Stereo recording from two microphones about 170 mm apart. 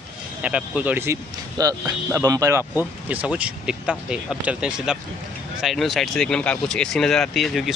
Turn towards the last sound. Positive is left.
turn(degrees=0)  # may be behind; listen again after turning